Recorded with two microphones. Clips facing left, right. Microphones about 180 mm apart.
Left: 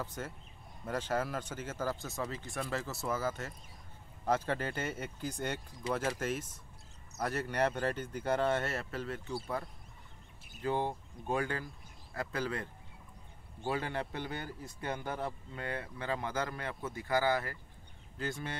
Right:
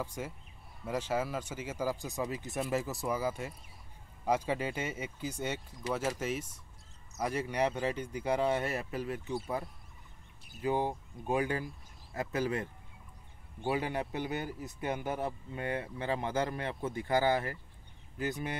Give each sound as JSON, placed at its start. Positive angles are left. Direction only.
{"t": 0.0, "sound": "speech", "side_deg": -10}
{"t": 10.6, "sound": "speech", "side_deg": -15}